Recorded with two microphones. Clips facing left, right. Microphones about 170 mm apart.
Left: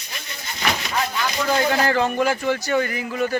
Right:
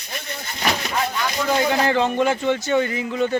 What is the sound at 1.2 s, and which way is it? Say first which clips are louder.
Speech: even; 5° right (ahead or behind).